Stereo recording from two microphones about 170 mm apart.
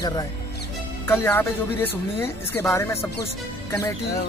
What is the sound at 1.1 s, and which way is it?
Speech, 15° left (ahead or behind).